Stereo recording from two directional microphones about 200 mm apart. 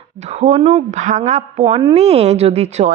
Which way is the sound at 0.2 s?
35° right (ahead or behind).